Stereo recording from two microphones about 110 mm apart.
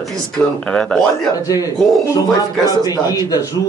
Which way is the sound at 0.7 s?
5° left (ahead or behind).